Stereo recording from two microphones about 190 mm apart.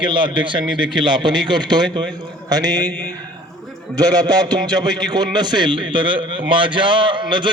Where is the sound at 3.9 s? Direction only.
20° right (ahead or behind).